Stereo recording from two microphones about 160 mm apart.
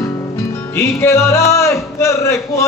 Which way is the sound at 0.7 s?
15° left (ahead or behind).